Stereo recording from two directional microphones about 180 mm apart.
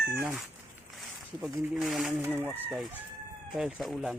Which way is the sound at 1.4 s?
Centre (ahead or behind).